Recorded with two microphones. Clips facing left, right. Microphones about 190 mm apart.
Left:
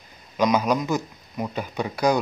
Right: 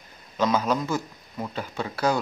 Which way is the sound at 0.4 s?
15° left (ahead or behind).